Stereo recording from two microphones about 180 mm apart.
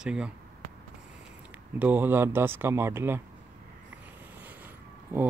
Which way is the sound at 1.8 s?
10° right (ahead or behind).